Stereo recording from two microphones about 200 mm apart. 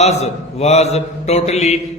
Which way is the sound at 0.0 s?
35° left (ahead or behind).